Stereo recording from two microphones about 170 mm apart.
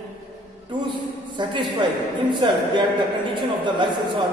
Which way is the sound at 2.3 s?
25° right (ahead or behind).